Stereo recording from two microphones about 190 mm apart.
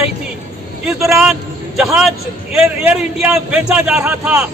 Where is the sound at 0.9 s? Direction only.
Centre (ahead or behind).